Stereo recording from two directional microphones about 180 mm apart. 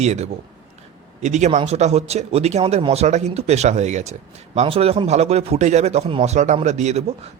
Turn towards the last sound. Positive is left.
turn(degrees=-35)  # may be behind; listen again after turning